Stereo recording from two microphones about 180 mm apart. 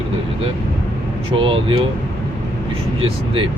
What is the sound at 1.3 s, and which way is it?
Speech, 30° right (ahead or behind).